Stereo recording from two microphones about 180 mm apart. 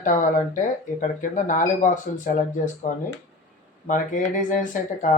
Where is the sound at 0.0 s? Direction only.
45° left (ahead or behind).